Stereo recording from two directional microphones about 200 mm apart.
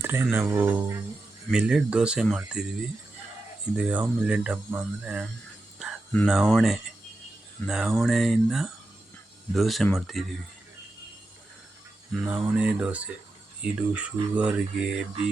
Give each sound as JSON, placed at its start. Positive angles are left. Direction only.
{"t": 0.0, "sound": "speech", "side_deg": -10}
{"t": 3.8, "sound": "speech", "side_deg": -5}
{"t": 12.2, "sound": "speech", "side_deg": -5}